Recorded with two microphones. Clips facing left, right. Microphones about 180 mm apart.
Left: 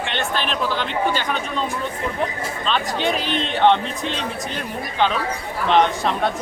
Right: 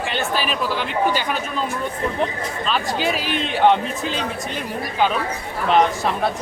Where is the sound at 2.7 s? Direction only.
5° right (ahead or behind).